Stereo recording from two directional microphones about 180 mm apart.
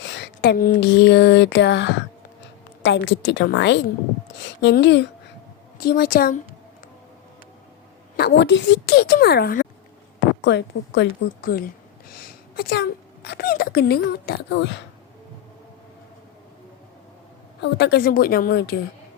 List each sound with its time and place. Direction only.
0.0 s a woman's voice: 75° left (ahead or behind)
5.7 s a woman's voice: 60° left (ahead or behind)
8.1 s a woman's voice: 70° left (ahead or behind)
10.4 s a woman's voice: 75° left (ahead or behind)
17.6 s a woman's voice: 65° left (ahead or behind)